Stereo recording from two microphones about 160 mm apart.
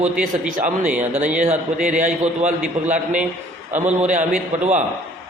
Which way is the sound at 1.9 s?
55° right (ahead or behind).